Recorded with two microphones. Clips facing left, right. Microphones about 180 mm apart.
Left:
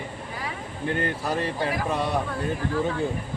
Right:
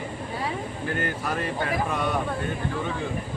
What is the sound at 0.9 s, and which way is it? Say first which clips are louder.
Speech: left 3 dB; 30° left (ahead or behind).